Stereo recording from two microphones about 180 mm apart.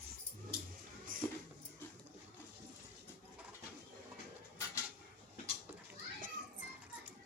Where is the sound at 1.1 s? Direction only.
50° right (ahead or behind).